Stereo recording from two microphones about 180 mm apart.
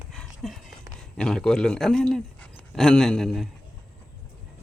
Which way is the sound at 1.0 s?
5° left (ahead or behind).